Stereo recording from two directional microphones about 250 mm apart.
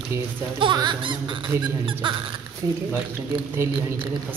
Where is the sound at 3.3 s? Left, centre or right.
Centre.